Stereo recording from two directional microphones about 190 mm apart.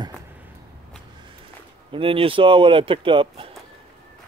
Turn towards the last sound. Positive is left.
turn(degrees=-25)  # may be behind; listen again after turning